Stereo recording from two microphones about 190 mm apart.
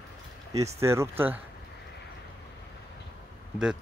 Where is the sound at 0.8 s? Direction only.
15° right (ahead or behind).